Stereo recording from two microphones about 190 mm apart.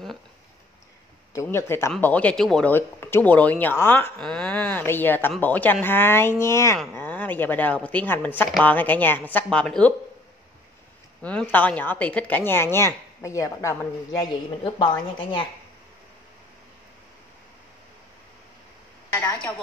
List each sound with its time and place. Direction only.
1.3 s speech: 15° left (ahead or behind)
11.2 s speech: 5° left (ahead or behind); by 15.4 s 25° left (ahead or behind)
19.1 s speech: 10° left (ahead or behind)